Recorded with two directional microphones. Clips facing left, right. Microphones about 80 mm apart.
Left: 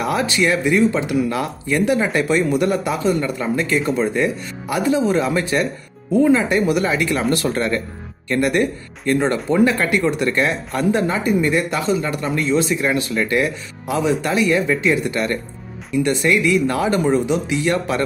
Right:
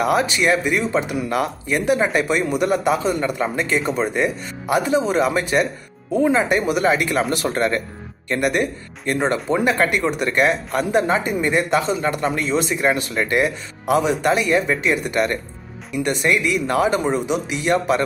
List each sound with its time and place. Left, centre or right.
0.1 s a man's voice: centre
2.7 s a man's voice: right